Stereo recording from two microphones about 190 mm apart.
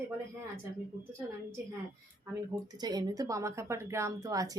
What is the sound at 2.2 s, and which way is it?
A woman's voice, 15° right (ahead or behind).